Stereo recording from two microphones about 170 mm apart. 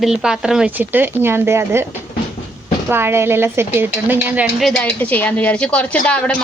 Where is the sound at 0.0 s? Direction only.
5° right (ahead or behind).